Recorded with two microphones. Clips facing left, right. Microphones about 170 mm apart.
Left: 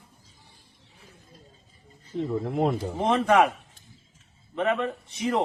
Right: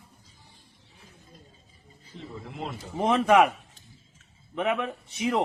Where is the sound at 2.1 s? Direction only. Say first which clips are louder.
Left 13 dB; 50° left (ahead or behind).